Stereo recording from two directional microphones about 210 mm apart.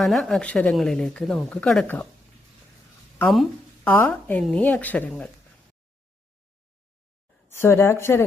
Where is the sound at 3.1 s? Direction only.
5° left (ahead or behind).